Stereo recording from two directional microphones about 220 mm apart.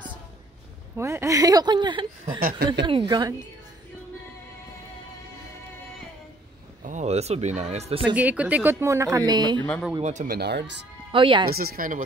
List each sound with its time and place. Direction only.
0.9 s speech: 10° right (ahead or behind)
2.4 s speech: 45° right (ahead or behind)
2.8 s speech: 25° right (ahead or behind)
6.8 s speech: 35° right (ahead or behind)
8.1 s speech: 5° right (ahead or behind)
9.7 s speech: 5° left (ahead or behind)
10.0 s speech: 35° right (ahead or behind)
11.1 s speech: 20° right (ahead or behind)
11.5 s speech: 45° right (ahead or behind)